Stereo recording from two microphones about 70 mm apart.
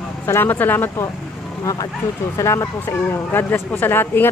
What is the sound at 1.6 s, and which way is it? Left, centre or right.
Speech, left.